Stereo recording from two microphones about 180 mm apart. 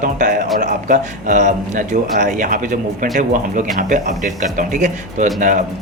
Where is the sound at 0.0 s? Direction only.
45° right (ahead or behind).